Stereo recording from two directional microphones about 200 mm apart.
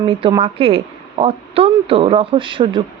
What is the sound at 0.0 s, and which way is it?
A woman's voice, 25° right (ahead or behind).